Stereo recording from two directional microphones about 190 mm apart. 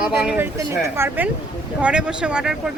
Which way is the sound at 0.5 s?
15° right (ahead or behind).